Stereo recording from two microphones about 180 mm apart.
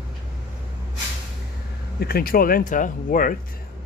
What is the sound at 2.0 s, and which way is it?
Speech, 55° left (ahead or behind).